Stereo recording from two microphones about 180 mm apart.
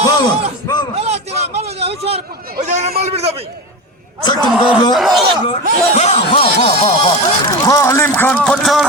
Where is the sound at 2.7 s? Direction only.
35° right (ahead or behind).